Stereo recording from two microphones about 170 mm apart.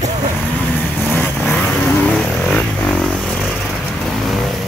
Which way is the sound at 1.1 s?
5° left (ahead or behind).